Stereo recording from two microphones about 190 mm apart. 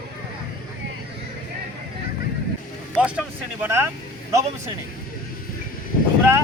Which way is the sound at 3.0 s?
5° right (ahead or behind).